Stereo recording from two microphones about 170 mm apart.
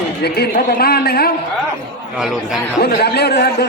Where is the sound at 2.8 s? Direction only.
65° left (ahead or behind).